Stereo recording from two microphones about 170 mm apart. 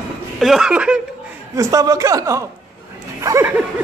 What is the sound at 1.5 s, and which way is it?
A man's voice, 20° right (ahead or behind).